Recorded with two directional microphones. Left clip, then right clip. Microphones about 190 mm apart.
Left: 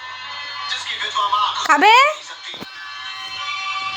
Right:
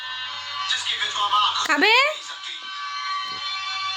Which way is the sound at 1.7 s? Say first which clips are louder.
Left 8 dB; 10° right (ahead or behind).